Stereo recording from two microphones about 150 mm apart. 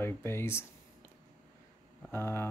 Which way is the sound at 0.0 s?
15° left (ahead or behind).